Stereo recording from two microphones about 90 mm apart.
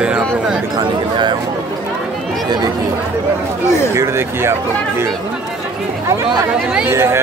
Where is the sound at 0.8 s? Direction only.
55° right (ahead or behind).